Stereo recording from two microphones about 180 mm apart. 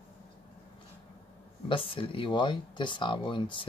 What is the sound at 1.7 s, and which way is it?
Speech, 30° left (ahead or behind).